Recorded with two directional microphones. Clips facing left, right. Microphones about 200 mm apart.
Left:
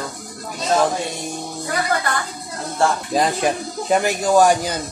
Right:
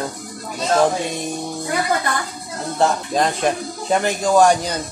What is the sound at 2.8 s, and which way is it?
Speech, 20° right (ahead or behind).